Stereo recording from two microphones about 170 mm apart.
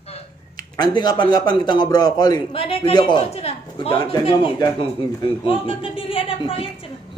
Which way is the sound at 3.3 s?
35° left (ahead or behind).